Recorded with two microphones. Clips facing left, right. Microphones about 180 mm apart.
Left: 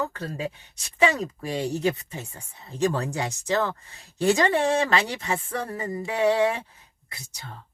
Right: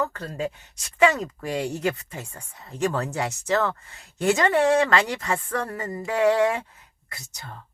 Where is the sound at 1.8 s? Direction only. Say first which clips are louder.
Left 1 dB; 25° left (ahead or behind).